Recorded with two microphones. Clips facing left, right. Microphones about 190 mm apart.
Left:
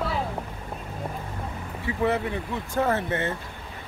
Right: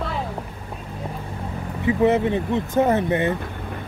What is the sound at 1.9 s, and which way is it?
Speech, 20° right (ahead or behind).